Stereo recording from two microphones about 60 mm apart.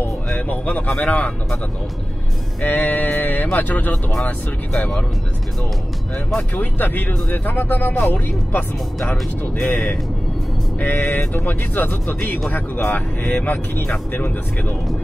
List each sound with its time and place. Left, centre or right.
0.5 s a man's voice: left
2.6 s a man's voice: left
3.9 s speech: centre
4.3 s a man's voice: left
6.5 s a man's voice: left
11.0 s a man's voice: left